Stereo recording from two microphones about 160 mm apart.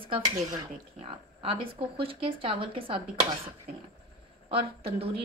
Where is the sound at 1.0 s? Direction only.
35° right (ahead or behind).